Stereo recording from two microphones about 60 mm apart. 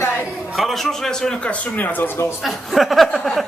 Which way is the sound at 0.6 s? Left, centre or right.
Centre.